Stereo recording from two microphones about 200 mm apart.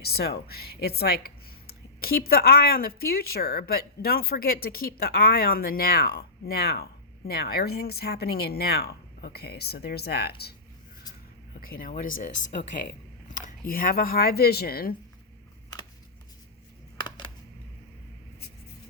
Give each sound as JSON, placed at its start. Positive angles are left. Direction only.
{"t": 0.0, "sound": "speech", "side_deg": 50}
{"t": 11.6, "sound": "speech", "side_deg": 45}